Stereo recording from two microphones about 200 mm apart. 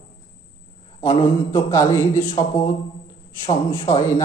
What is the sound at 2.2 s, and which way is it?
A man's voice, 25° left (ahead or behind).